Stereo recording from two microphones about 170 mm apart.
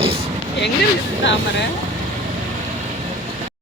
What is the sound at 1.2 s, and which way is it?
Speech, 90° left.